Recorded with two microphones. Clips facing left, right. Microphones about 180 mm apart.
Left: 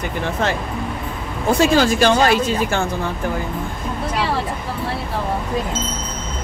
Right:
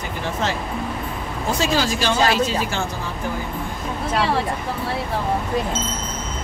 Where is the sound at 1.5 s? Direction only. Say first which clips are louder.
Left 7 dB; 55° left (ahead or behind).